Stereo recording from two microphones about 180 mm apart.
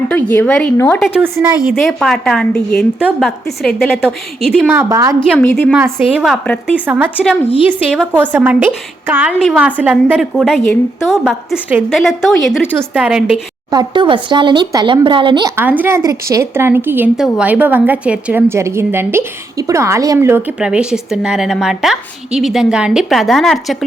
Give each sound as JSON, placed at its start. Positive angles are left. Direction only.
{"t": 0.1, "sound": "a woman's voice", "side_deg": 10}
{"t": 5.4, "sound": "a woman's voice", "side_deg": 5}
{"t": 5.7, "sound": "a woman's voice", "side_deg": -10}
{"t": 13.7, "sound": "speech", "side_deg": -25}
{"t": 15.5, "sound": "a woman's voice", "side_deg": -10}